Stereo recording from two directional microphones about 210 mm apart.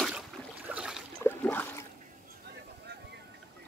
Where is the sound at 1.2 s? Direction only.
10° left (ahead or behind).